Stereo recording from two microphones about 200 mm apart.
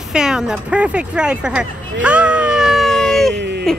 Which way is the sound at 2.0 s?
5° right (ahead or behind).